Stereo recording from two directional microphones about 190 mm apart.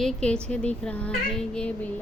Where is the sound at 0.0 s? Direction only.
5° left (ahead or behind).